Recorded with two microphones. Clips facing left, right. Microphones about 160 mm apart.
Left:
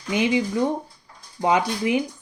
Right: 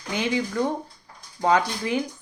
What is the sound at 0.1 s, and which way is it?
Speech, 15° left (ahead or behind).